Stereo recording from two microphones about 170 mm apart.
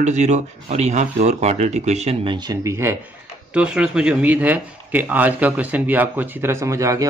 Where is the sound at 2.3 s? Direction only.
20° right (ahead or behind).